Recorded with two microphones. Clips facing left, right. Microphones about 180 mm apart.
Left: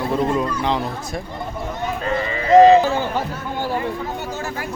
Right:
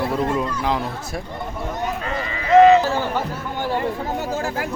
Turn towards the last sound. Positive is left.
turn(degrees=15)  # may be behind; listen again after turning